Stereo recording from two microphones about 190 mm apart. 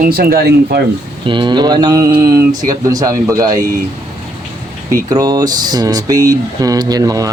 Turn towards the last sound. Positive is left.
turn(degrees=-20)  # may be behind; listen again after turning